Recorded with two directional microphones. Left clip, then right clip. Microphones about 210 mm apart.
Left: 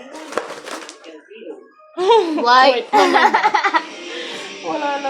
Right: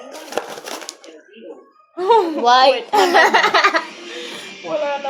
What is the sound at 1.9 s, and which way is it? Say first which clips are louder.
Speech: left 1 dB; 40° left (ahead or behind).